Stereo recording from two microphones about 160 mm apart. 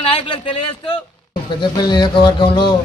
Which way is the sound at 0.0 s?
35° left (ahead or behind).